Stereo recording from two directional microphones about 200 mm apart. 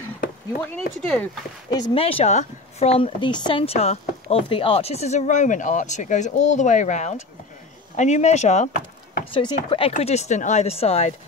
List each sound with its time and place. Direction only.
1.0 s speech: 5° left (ahead or behind)
1.7 s speech: 25° left (ahead or behind)
9.3 s speech: 25° left (ahead or behind)